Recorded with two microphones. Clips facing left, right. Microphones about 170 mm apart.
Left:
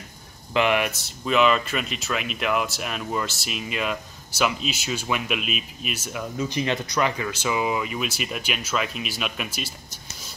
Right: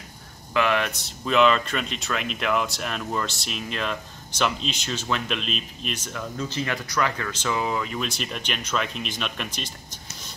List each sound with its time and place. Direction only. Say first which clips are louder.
0.5 s speech: left 1 dB; 20° left (ahead or behind)
0.9 s speech: even; centre (ahead or behind)